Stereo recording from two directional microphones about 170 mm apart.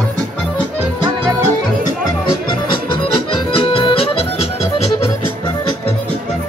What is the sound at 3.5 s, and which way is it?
Music, 30° left (ahead or behind).